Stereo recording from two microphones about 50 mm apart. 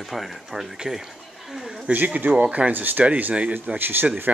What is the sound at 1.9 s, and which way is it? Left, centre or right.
Speech, right.